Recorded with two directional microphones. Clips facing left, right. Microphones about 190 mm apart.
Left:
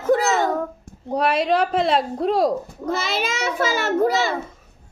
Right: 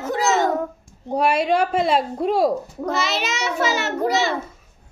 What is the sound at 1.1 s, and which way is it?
A woman's voice, centre (ahead or behind).